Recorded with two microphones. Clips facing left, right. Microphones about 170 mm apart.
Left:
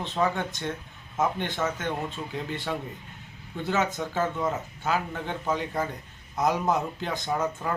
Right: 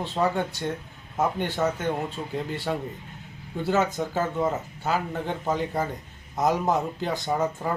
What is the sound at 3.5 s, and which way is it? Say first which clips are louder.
Speech: right 3 dB; 15° right (ahead or behind).